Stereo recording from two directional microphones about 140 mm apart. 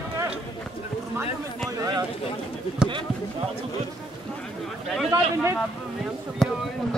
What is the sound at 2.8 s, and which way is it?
Speech, 5° right (ahead or behind).